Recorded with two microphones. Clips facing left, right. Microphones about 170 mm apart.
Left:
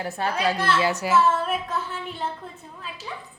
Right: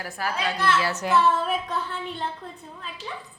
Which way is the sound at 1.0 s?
Centre (ahead or behind).